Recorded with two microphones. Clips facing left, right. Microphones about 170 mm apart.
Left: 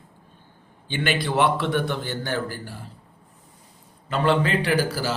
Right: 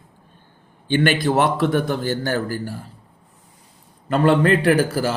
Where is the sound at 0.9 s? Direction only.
50° right (ahead or behind).